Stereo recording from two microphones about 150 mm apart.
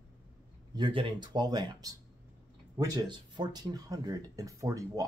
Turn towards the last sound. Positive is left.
turn(degrees=-20)  # may be behind; listen again after turning